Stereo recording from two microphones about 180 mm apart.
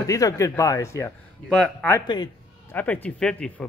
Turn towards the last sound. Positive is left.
turn(degrees=5)  # may be behind; listen again after turning